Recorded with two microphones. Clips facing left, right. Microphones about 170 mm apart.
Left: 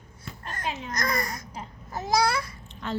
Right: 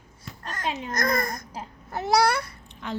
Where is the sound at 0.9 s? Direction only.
50° right (ahead or behind).